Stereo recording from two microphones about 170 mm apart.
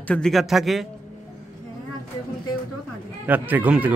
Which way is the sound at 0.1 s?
Centre (ahead or behind).